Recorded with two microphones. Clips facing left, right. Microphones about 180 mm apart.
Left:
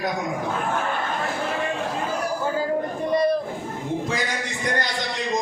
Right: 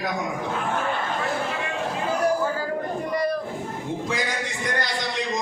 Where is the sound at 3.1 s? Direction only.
25° left (ahead or behind).